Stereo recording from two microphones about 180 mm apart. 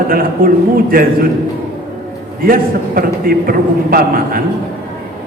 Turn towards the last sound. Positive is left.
turn(degrees=-55)  # may be behind; listen again after turning